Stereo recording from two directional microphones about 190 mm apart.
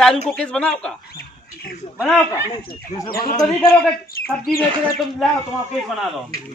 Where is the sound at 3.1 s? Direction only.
50° left (ahead or behind).